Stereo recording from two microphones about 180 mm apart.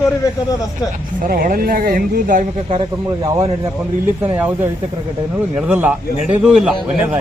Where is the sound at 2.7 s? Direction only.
30° right (ahead or behind).